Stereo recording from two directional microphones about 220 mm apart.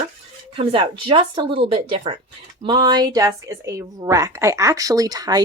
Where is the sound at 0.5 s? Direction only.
25° right (ahead or behind).